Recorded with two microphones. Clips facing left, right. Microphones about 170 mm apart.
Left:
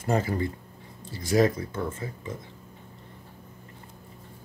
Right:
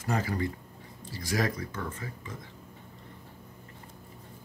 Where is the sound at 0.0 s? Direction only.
30° left (ahead or behind).